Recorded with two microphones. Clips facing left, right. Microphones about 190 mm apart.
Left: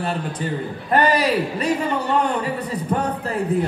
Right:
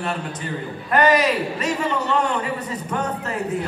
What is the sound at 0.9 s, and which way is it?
Speech, 30° left (ahead or behind).